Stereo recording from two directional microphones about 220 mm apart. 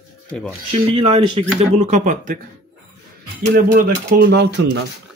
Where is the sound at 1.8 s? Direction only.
35° right (ahead or behind).